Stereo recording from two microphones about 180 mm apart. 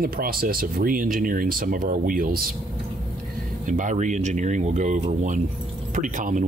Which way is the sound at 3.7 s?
45° right (ahead or behind).